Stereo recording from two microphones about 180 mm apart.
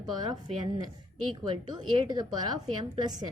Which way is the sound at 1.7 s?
25° right (ahead or behind).